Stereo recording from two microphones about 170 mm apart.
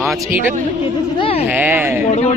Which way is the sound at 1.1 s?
35° left (ahead or behind).